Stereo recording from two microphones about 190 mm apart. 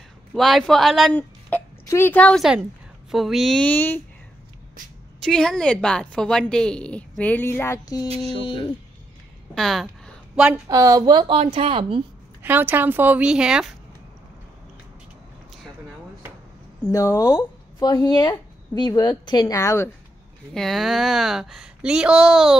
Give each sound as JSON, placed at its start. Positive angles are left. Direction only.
{"t": 0.3, "sound": "a woman's voice", "side_deg": 0}
{"t": 5.2, "sound": "a woman's voice", "side_deg": 5}
{"t": 9.6, "sound": "a woman's voice", "side_deg": 0}
{"t": 10.7, "sound": "a woman's voice", "side_deg": -20}
{"t": 12.4, "sound": "a woman's voice", "side_deg": -10}
{"t": 16.9, "sound": "speech", "side_deg": 15}
{"t": 20.5, "sound": "a woman's voice", "side_deg": 0}